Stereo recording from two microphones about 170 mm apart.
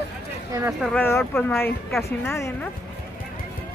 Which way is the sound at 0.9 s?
10° left (ahead or behind).